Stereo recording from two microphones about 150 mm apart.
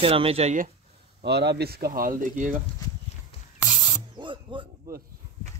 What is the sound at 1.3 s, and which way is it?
Speech, 90° right.